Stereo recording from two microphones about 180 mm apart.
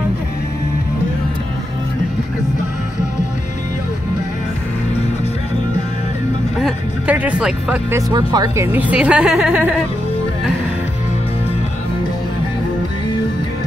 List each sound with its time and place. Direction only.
6.6 s music: 10° right (ahead or behind)
8.1 s speech: 25° right (ahead or behind)
8.7 s speech: 10° right (ahead or behind)